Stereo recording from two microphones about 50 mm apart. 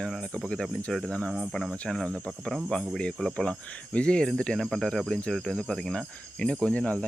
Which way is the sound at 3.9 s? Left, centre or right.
Left.